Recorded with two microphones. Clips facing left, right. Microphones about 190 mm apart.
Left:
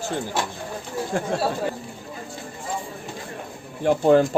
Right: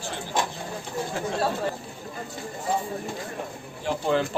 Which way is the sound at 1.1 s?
50° left (ahead or behind).